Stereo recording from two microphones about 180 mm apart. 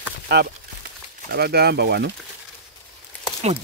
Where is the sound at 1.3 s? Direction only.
60° right (ahead or behind).